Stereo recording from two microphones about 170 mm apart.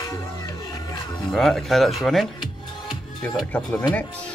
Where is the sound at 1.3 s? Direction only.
Centre (ahead or behind).